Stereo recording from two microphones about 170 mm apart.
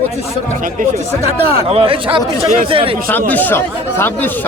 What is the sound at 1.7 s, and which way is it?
Speech, 35° right (ahead or behind).